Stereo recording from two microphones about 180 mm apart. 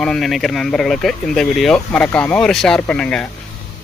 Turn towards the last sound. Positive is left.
turn(degrees=5)  # may be behind; listen again after turning